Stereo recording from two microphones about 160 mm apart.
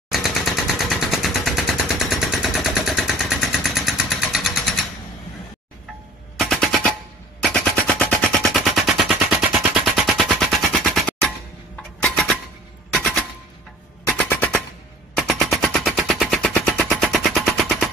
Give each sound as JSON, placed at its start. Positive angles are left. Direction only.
{"t": 0.1, "sound": "machine gun", "side_deg": 0}
{"t": 6.3, "sound": "machine gun", "side_deg": 0}
{"t": 12.0, "sound": "a sound", "side_deg": 5}
{"t": 12.9, "sound": "machine gun", "side_deg": 5}